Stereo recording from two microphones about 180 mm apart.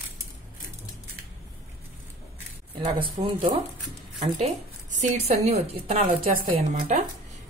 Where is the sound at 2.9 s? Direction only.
30° right (ahead or behind).